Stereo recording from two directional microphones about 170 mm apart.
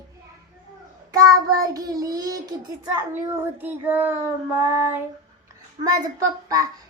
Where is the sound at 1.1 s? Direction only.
20° right (ahead or behind).